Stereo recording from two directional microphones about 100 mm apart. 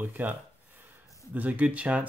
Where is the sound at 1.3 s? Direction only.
15° right (ahead or behind).